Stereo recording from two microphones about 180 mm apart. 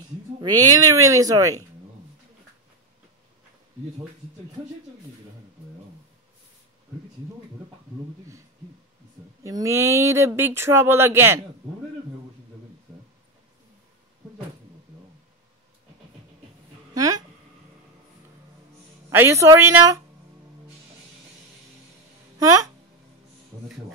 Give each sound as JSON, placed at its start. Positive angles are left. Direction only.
{"t": 0.4, "sound": "speech", "side_deg": -20}
{"t": 9.4, "sound": "speech", "side_deg": -20}
{"t": 16.9, "sound": "speech", "side_deg": -20}
{"t": 19.0, "sound": "speech", "side_deg": -15}